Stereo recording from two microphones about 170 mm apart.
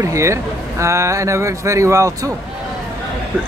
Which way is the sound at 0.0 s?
15° right (ahead or behind).